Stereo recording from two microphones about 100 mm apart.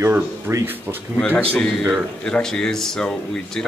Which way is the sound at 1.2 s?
15° left (ahead or behind).